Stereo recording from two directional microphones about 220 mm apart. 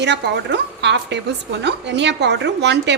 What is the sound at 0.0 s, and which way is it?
A woman's voice, 50° right (ahead or behind).